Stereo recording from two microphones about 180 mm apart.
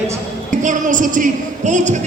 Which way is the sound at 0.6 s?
45° right (ahead or behind).